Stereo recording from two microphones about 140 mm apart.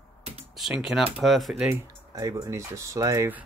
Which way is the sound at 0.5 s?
5° right (ahead or behind).